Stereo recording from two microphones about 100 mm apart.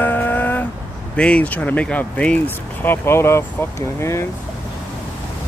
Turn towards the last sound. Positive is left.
turn(degrees=25)  # may be behind; listen again after turning